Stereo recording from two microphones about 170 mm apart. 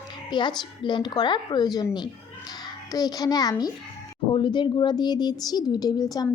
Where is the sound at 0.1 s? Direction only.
25° left (ahead or behind).